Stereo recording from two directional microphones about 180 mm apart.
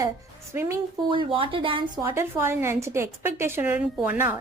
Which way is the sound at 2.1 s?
15° right (ahead or behind).